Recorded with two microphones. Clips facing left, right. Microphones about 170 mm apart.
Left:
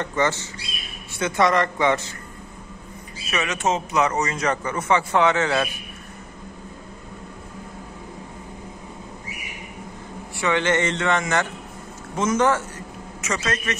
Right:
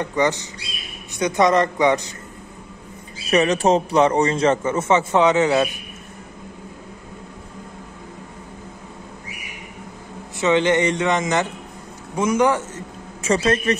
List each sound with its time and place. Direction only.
0.0 s a man's voice: 15° right (ahead or behind)
3.3 s a man's voice: 35° right (ahead or behind); by 5.7 s 20° right (ahead or behind)
10.3 s a man's voice: 20° right (ahead or behind)
13.2 s a man's voice: 30° right (ahead or behind)